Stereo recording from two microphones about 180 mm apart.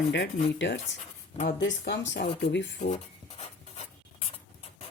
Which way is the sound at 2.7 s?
35° left (ahead or behind).